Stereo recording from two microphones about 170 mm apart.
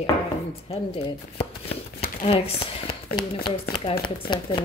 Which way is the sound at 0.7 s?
35° left (ahead or behind).